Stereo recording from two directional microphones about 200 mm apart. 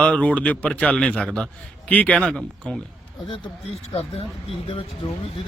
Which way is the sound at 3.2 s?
25° left (ahead or behind).